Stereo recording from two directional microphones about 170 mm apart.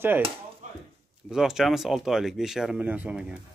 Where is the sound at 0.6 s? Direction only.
50° right (ahead or behind).